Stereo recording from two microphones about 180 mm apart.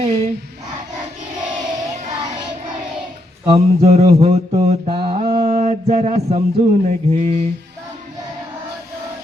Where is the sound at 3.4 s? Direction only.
35° right (ahead or behind).